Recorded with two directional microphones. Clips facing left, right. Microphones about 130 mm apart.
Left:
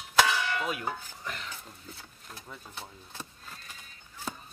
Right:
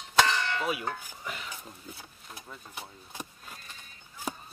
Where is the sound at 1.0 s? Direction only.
5° right (ahead or behind).